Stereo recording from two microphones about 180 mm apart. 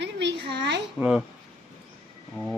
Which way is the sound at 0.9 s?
5° right (ahead or behind).